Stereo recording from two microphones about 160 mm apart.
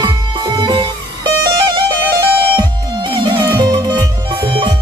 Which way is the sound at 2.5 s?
30° right (ahead or behind).